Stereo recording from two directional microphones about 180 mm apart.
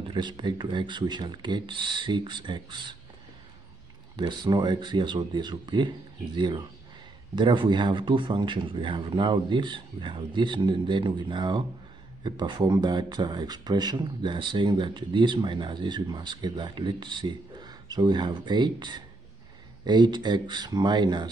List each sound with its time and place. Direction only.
0.1 s speech: 25° right (ahead or behind)
4.2 s speech: 25° right (ahead or behind)